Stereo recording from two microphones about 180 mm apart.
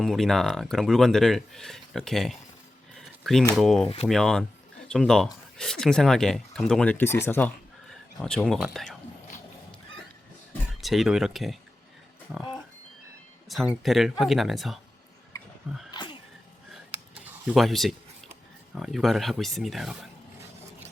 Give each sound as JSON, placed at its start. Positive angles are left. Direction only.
{"t": 0.0, "sound": "speech", "side_deg": 0}
{"t": 2.9, "sound": "a sound", "side_deg": 0}
{"t": 3.6, "sound": "speech", "side_deg": 0}
{"t": 10.8, "sound": "speech", "side_deg": 0}
{"t": 13.5, "sound": "speech", "side_deg": 0}
{"t": 15.9, "sound": "sneeze", "side_deg": 25}
{"t": 17.4, "sound": "speech", "side_deg": 0}